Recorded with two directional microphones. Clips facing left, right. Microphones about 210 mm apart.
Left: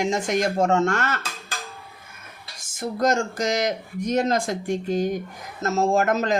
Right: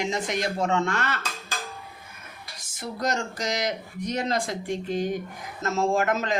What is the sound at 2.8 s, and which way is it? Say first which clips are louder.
Speech: left 6 dB; 50° left (ahead or behind).